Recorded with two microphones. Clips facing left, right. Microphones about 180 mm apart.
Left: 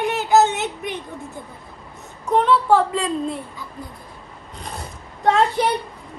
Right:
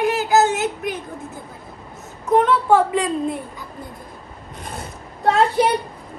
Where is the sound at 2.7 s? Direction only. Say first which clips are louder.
Right 1 dB; 20° right (ahead or behind).